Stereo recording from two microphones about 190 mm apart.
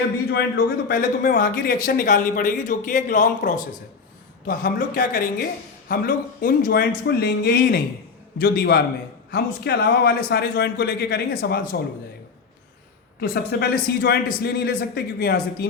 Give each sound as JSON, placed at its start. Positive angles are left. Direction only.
{"t": 0.3, "sound": "a man's voice", "side_deg": 60}
{"t": 13.1, "sound": "a man's voice", "side_deg": 55}